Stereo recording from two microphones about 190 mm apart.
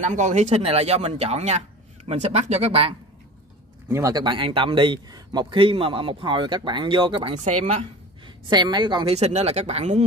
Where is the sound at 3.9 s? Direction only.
20° right (ahead or behind); by 7.8 s 35° right (ahead or behind).